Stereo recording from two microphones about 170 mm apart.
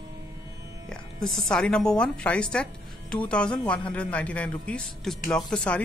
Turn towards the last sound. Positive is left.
turn(degrees=5)  # may be behind; listen again after turning